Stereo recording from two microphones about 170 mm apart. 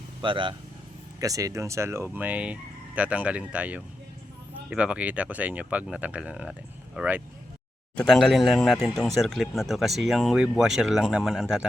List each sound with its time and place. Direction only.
0.2 s speech: 30° right (ahead or behind); by 11.6 s 5° right (ahead or behind)